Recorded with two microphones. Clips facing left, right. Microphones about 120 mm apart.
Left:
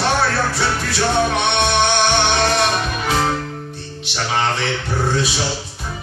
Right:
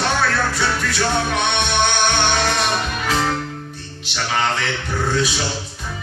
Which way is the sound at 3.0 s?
25° left (ahead or behind).